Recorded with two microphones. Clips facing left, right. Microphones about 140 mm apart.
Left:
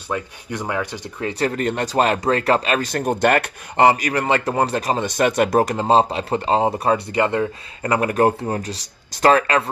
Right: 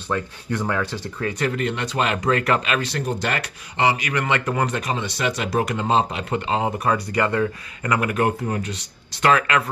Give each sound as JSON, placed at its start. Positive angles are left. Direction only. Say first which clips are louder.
{"t": 0.1, "sound": "speech", "louder": "right 1 dB", "side_deg": 15}
{"t": 1.4, "sound": "speech", "louder": "left 4 dB", "side_deg": 40}